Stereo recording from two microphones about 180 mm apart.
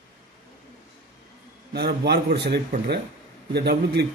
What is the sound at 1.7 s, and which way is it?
A man's voice, 65° right (ahead or behind).